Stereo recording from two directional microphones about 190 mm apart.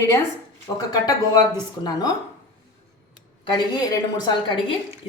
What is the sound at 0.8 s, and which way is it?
Speech, 20° left (ahead or behind).